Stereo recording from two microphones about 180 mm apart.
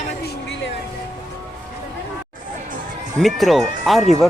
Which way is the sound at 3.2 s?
Centre (ahead or behind).